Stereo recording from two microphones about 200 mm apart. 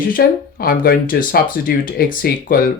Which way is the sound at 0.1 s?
45° left (ahead or behind).